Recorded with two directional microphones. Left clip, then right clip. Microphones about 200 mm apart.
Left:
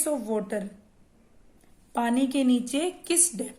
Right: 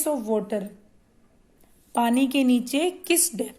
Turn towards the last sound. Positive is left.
turn(degrees=-30)  # may be behind; listen again after turning